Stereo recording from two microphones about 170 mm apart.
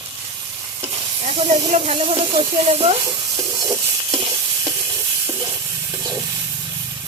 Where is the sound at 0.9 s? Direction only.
35° right (ahead or behind).